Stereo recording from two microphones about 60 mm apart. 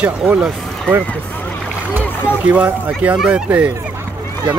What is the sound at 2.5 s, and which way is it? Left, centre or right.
Speech, right.